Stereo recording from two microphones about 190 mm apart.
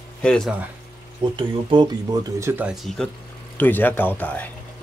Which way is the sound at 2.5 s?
5° right (ahead or behind).